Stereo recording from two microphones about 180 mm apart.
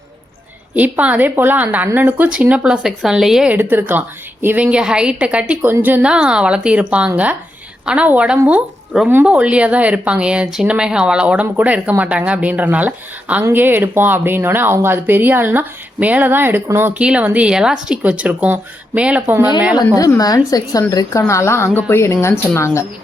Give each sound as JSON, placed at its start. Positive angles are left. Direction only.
{"t": 0.8, "sound": "a woman's voice", "side_deg": -10}
{"t": 20.0, "sound": "a woman's voice", "side_deg": 20}